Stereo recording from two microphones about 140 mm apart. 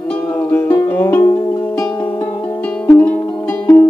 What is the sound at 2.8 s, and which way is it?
Music, 15° left (ahead or behind).